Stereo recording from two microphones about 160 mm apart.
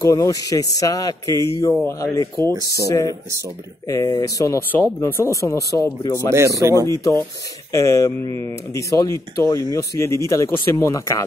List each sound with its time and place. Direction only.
0.0 s a man's voice: 20° left (ahead or behind)
6.3 s speech: 20° right (ahead or behind)
7.7 s a man's voice: 20° left (ahead or behind)